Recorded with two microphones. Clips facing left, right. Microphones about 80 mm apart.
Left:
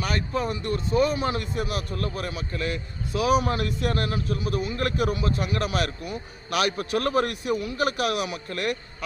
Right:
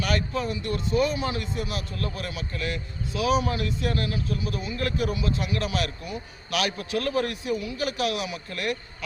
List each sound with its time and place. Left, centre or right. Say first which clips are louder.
0.0 s a man's voice: even; left